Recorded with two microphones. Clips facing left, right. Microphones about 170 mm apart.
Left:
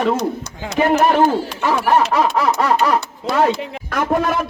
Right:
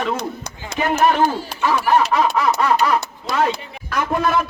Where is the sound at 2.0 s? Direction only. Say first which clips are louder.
Left 1 dB; 35° right (ahead or behind).